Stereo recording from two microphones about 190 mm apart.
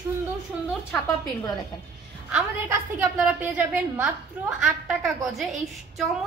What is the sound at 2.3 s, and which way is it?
A woman's voice, 10° right (ahead or behind).